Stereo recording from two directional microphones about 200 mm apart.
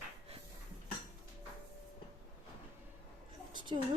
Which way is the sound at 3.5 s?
25° right (ahead or behind).